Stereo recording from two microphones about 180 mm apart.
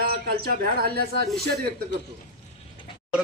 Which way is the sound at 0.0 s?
60° right (ahead or behind).